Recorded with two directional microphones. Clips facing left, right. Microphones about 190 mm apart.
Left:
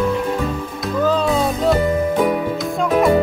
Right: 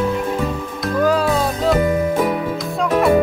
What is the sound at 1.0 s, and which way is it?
Music, 10° right (ahead or behind).